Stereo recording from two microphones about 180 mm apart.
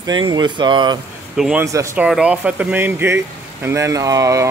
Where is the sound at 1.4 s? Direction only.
5° right (ahead or behind).